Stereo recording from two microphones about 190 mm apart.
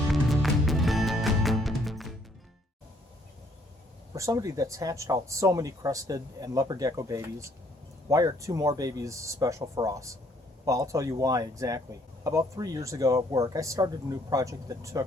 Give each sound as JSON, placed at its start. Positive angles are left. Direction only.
{"t": 0.1, "sound": "music", "side_deg": 0}
{"t": 4.1, "sound": "speech", "side_deg": -15}